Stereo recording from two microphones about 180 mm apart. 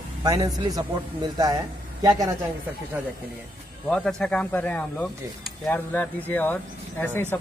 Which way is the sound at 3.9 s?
5° left (ahead or behind).